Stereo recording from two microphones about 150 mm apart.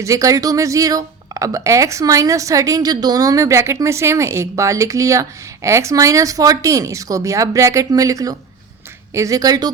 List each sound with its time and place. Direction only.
0.0 s speech: 20° right (ahead or behind)